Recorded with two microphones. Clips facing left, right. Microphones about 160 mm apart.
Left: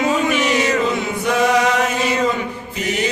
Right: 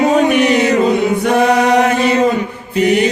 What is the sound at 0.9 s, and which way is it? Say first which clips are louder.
Choir: right 7 dB; 55° right (ahead or behind).